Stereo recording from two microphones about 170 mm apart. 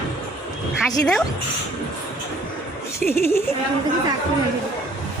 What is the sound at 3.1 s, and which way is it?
Speech, 15° left (ahead or behind).